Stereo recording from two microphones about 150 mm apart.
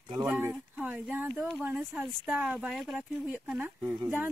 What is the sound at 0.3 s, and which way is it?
A woman's voice, 5° right (ahead or behind).